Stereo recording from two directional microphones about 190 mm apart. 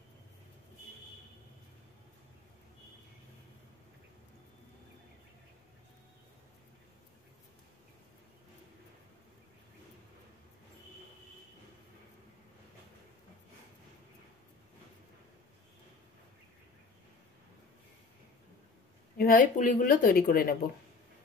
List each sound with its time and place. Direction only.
19.1 s a woman's voice: 50° left (ahead or behind)